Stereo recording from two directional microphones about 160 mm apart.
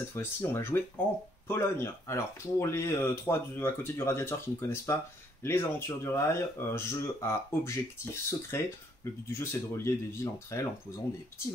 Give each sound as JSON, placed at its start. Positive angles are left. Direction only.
{"t": 0.1, "sound": "speech", "side_deg": 15}